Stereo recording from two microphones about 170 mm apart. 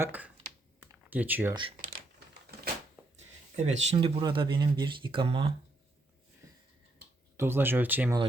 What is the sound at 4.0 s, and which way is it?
Speech, 30° right (ahead or behind).